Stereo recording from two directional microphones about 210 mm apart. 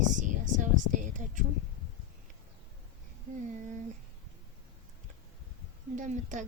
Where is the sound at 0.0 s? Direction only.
35° right (ahead or behind).